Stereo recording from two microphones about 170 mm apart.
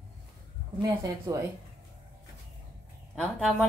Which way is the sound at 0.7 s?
20° right (ahead or behind).